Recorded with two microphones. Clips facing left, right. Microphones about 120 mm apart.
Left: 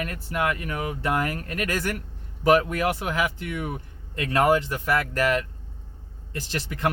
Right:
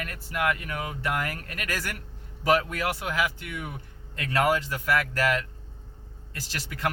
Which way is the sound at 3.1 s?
30° left (ahead or behind).